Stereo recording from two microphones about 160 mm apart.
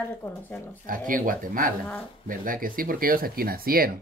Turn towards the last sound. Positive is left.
turn(degrees=-65)  # may be behind; listen again after turning